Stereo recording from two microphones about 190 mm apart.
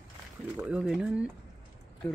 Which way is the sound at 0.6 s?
5° right (ahead or behind).